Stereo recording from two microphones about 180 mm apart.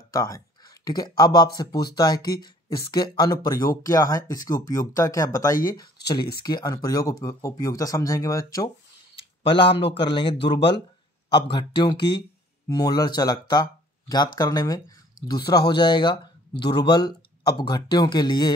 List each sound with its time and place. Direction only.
0.1 s speech: 20° left (ahead or behind)
9.9 s speech: 25° left (ahead or behind)